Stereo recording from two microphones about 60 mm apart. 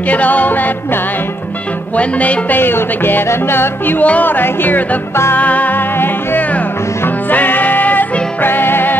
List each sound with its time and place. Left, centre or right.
0.1 s music: left
2.0 s music: left
2.6 s music: left
4.0 s music: left
5.1 s music: left
5.4 s music: left
7.2 s music: left